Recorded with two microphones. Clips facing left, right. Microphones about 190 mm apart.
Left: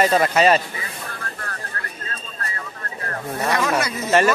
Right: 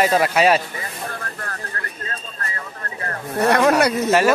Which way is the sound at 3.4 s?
65° right (ahead or behind).